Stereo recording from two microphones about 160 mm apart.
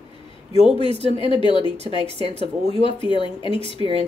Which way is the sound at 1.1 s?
30° left (ahead or behind).